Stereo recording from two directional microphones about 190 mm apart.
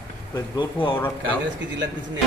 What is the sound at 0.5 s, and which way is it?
Speech, 25° left (ahead or behind).